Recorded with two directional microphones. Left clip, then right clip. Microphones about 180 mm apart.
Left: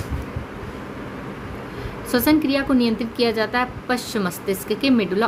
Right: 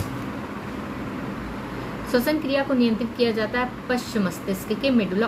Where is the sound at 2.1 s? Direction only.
50° left (ahead or behind).